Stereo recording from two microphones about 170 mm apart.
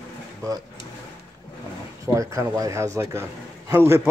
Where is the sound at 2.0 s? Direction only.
20° right (ahead or behind).